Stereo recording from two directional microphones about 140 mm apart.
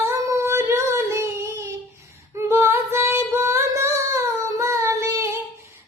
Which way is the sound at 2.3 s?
20° right (ahead or behind).